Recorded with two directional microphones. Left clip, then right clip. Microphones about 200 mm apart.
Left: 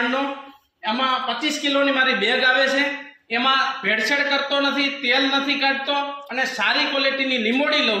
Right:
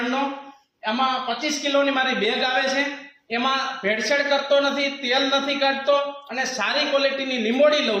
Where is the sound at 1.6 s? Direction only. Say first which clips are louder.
Left 2 dB; 25° right (ahead or behind).